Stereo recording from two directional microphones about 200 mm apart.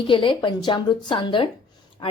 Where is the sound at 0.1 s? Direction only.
25° left (ahead or behind).